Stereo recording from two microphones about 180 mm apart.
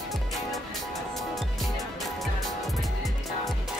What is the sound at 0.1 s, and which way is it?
Music, centre (ahead or behind).